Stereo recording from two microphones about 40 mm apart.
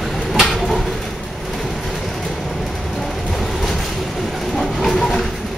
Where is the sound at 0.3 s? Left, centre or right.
Centre.